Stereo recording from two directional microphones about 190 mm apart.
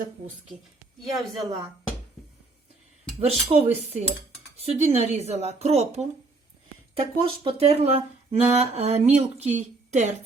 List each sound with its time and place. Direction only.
1.1 s a woman's voice: centre (ahead or behind)
3.2 s a woman's voice: 30° right (ahead or behind)